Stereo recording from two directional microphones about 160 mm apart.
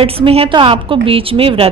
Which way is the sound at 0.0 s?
35° right (ahead or behind).